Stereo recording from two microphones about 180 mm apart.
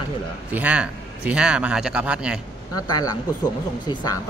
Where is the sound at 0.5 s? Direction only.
10° right (ahead or behind).